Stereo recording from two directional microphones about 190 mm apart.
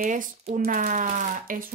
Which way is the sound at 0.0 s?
40° right (ahead or behind).